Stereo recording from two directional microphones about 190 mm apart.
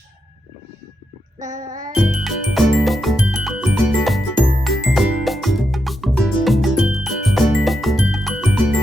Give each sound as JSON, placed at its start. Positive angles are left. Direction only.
{"t": 1.4, "sound": "music", "side_deg": -40}
{"t": 2.0, "sound": "music", "side_deg": 0}